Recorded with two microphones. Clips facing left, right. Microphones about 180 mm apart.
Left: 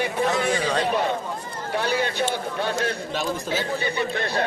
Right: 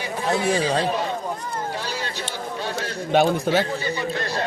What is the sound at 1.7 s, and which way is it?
A man's voice, 60° left (ahead or behind).